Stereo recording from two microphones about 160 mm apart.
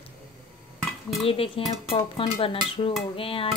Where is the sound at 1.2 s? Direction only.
35° left (ahead or behind).